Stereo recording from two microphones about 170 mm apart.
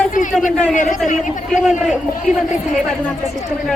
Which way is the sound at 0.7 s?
50° left (ahead or behind).